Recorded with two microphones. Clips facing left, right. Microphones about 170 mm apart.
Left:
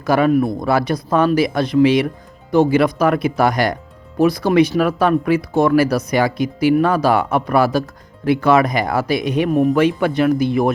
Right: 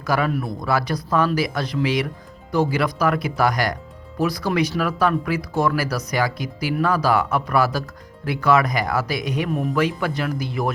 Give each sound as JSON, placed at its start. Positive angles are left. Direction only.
{"t": 0.0, "sound": "speech", "side_deg": 25}